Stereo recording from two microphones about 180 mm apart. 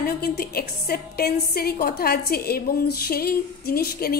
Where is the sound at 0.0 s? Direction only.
55° left (ahead or behind).